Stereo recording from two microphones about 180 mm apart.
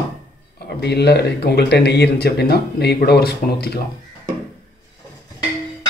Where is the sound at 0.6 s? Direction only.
65° left (ahead or behind).